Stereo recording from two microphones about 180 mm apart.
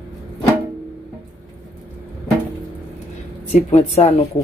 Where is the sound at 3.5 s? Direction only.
40° left (ahead or behind).